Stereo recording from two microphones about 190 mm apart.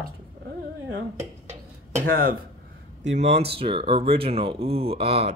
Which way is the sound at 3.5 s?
30° right (ahead or behind).